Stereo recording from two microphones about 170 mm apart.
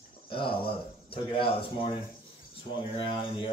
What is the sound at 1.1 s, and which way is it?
Speech, 30° left (ahead or behind).